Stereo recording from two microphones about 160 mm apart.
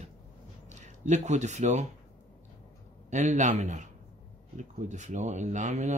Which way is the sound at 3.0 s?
50° right (ahead or behind).